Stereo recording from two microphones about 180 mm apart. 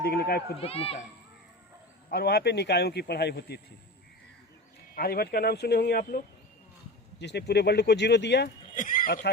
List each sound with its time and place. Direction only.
0.0 s speech: 60° left (ahead or behind)
0.6 s speech: 30° left (ahead or behind)
2.0 s speech: 65° left (ahead or behind)
4.9 s speech: 55° left (ahead or behind)
7.2 s speech: 70° left (ahead or behind)
8.7 s speech: 45° left (ahead or behind)